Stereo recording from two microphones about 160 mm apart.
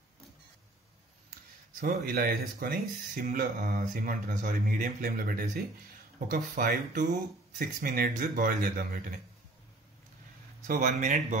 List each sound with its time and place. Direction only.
1.8 s speech: 65° right (ahead or behind)
10.7 s speech: 50° right (ahead or behind)